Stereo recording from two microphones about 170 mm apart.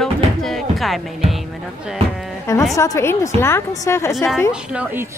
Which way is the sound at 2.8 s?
15° left (ahead or behind).